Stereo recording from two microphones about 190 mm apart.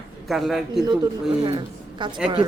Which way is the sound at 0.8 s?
20° right (ahead or behind).